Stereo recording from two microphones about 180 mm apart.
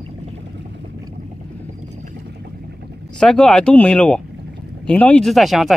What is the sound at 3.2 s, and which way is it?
Speech, 5° left (ahead or behind).